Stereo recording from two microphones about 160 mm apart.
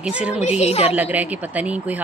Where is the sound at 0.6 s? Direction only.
40° left (ahead or behind).